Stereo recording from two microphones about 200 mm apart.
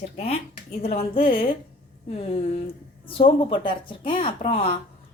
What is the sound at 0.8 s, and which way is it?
A woman's voice, 30° left (ahead or behind).